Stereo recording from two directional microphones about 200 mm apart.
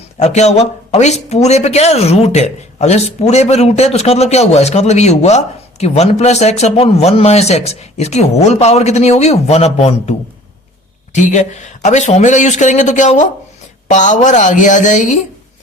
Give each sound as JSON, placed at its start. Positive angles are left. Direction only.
{"t": 0.2, "sound": "speech", "side_deg": 35}